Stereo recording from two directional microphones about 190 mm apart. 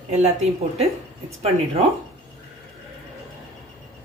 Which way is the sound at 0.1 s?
35° right (ahead or behind).